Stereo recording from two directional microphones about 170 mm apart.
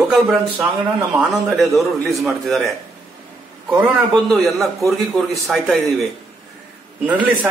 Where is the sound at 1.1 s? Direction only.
Centre (ahead or behind).